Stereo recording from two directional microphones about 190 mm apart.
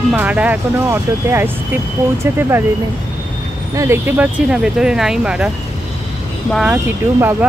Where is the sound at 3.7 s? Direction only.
15° right (ahead or behind).